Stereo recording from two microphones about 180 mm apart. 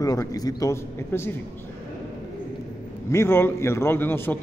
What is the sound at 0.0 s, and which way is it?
A man's voice, 20° left (ahead or behind).